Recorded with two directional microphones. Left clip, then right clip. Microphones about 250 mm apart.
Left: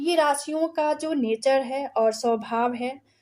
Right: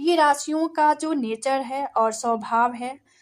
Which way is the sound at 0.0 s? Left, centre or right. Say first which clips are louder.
Right 3 dB; right.